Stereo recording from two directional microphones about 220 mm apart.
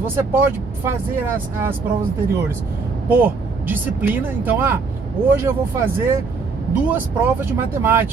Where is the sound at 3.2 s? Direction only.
10° right (ahead or behind).